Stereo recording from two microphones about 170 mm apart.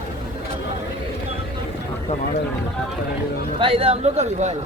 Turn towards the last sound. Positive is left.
turn(degrees=-40)  # may be behind; listen again after turning